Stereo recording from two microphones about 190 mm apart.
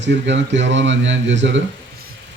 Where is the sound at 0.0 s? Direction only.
70° right (ahead or behind).